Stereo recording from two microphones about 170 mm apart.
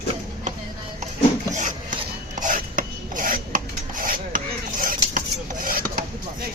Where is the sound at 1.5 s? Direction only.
50° right (ahead or behind).